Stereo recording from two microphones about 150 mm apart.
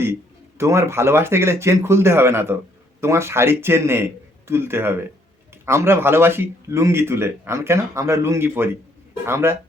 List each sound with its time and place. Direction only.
0.6 s speech: 20° right (ahead or behind)